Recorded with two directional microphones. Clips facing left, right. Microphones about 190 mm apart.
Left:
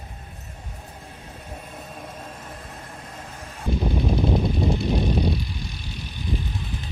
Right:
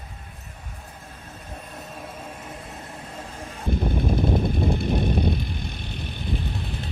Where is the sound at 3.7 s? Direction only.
55° right (ahead or behind).